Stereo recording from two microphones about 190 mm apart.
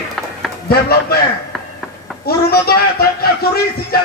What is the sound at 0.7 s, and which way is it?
Speech, 55° left (ahead or behind).